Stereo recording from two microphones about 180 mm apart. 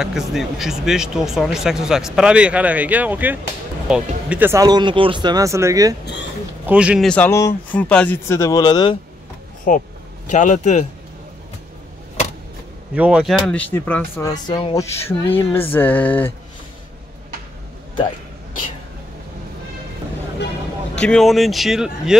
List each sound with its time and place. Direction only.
0.0 s speech: centre (ahead or behind)
7.1 s speech: 10° left (ahead or behind)
9.7 s a man's voice: 50° left (ahead or behind)
12.9 s speech: 5° right (ahead or behind)
13.5 s speech: 10° left (ahead or behind)
14.3 s speech: 20° left (ahead or behind)
21.0 s speech: 5° left (ahead or behind)